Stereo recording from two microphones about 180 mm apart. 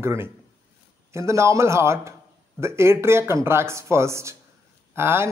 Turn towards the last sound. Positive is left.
turn(degrees=-15)  # may be behind; listen again after turning